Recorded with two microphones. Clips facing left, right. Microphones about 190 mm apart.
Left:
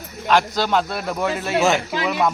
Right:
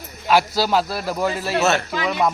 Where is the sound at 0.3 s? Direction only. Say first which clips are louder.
Right 1 dB; 5° right (ahead or behind).